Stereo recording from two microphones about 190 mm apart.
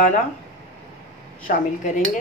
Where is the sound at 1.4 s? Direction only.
45° left (ahead or behind).